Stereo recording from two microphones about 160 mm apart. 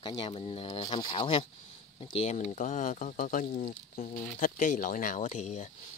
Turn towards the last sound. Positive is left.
turn(degrees=50)  # may be behind; listen again after turning